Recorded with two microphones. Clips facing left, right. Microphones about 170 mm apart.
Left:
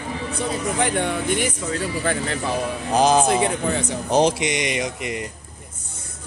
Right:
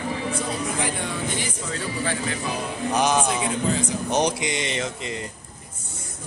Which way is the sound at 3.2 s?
60° left (ahead or behind).